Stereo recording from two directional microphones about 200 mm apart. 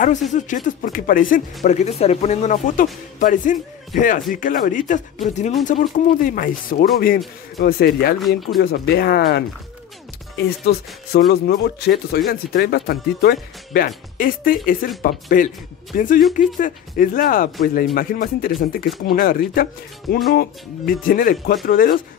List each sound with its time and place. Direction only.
0.3 s speech: 40° left (ahead or behind)